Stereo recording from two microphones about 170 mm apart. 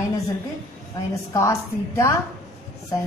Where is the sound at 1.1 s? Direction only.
20° left (ahead or behind).